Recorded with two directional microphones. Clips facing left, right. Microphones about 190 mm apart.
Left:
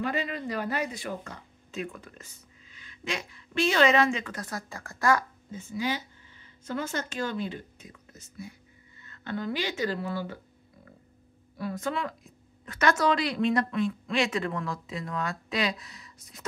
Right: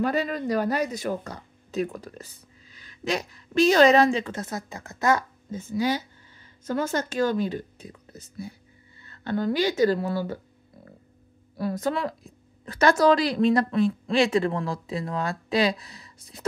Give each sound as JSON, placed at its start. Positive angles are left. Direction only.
{"t": 0.0, "sound": "speech", "side_deg": -40}
{"t": 5.5, "sound": "speech", "side_deg": -40}
{"t": 11.5, "sound": "speech", "side_deg": -40}